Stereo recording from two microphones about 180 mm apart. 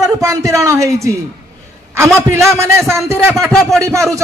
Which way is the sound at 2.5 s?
15° right (ahead or behind).